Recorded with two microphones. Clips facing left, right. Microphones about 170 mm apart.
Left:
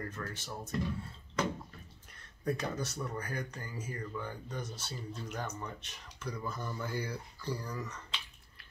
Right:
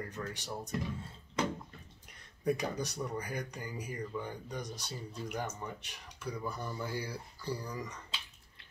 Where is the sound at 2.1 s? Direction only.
15° right (ahead or behind).